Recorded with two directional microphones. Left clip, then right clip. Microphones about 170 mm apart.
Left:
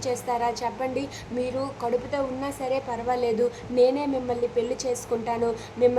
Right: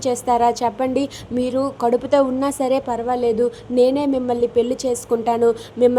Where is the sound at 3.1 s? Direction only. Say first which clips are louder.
Right 5 dB; 30° right (ahead or behind).